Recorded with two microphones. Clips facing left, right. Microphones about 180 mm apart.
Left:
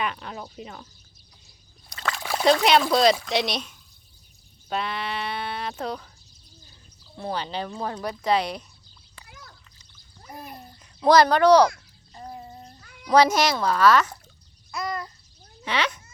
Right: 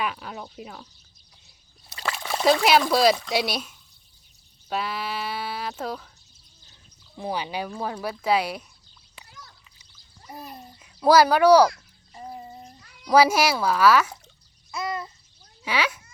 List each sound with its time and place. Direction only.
0.0 s speech: 5° right (ahead or behind)
1.9 s splash: 5° right (ahead or behind)
3.2 s speech: 5° right (ahead or behind)
7.2 s a child's voice: 10° right (ahead or behind)
9.3 s a sound: 50° left (ahead or behind)
10.6 s speech: 10° right (ahead or behind)
12.1 s a sound: 5° right (ahead or behind)
12.8 s cat: 55° left (ahead or behind)
13.1 s a child's voice: 10° right (ahead or behind)
14.7 s babbling: centre (ahead or behind)
15.6 s a child's voice: 5° right (ahead or behind)